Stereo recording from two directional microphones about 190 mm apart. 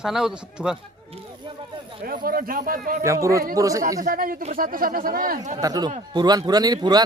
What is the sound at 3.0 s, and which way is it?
Speech, 15° right (ahead or behind).